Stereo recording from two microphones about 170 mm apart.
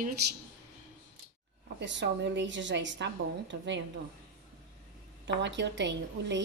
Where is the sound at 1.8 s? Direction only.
90° right.